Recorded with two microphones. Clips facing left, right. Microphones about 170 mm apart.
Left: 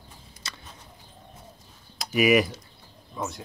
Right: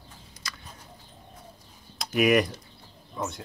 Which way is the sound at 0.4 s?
25° left (ahead or behind).